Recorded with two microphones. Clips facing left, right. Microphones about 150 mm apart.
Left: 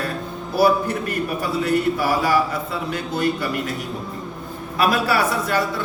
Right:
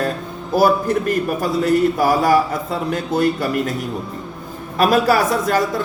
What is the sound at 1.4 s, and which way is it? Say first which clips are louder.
Speech: right 4 dB; 45° right (ahead or behind).